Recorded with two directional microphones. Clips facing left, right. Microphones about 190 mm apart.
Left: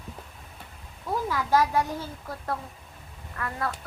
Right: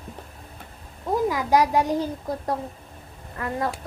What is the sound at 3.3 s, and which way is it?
Speech, 25° right (ahead or behind).